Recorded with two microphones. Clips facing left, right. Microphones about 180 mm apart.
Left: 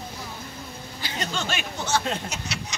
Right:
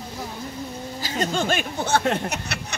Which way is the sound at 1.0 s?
45° right (ahead or behind).